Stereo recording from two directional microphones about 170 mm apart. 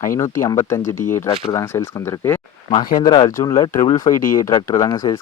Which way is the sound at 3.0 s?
25° left (ahead or behind).